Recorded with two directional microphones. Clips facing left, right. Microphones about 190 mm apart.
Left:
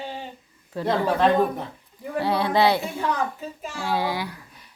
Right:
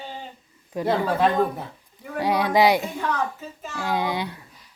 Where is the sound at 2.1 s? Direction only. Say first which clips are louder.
Right 1 dB; 15° right (ahead or behind).